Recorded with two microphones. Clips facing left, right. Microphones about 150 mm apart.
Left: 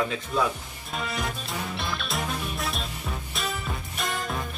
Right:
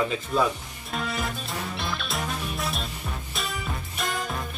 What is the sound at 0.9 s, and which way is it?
Music, centre (ahead or behind).